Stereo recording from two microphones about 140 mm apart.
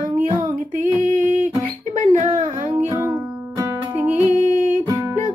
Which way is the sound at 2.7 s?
15° right (ahead or behind).